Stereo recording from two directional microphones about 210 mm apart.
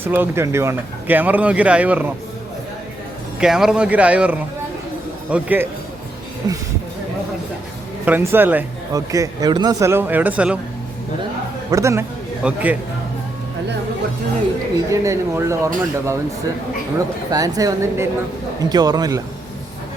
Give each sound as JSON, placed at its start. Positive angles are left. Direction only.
{"t": 0.0, "sound": "speech", "side_deg": -10}
{"t": 3.4, "sound": "speech", "side_deg": -5}
{"t": 6.4, "sound": "a man's voice", "side_deg": -20}
{"t": 8.0, "sound": "speech", "side_deg": -10}
{"t": 11.7, "sound": "speech", "side_deg": -15}
{"t": 14.8, "sound": "speech", "side_deg": -15}
{"t": 17.3, "sound": "a man's voice", "side_deg": -15}